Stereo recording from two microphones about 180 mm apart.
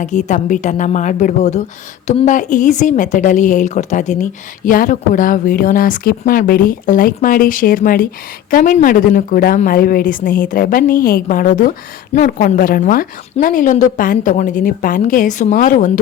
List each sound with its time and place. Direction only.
0.0 s a woman's voice: 40° left (ahead or behind)